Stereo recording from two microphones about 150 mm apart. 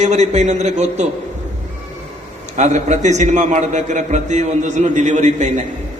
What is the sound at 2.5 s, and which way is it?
A man's voice, 50° right (ahead or behind).